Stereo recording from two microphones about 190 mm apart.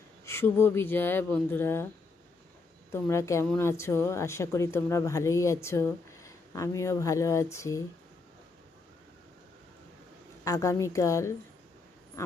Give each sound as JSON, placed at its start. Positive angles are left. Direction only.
{"t": 0.3, "sound": "speech", "side_deg": 10}
{"t": 2.9, "sound": "speech", "side_deg": 15}
{"t": 10.4, "sound": "speech", "side_deg": 15}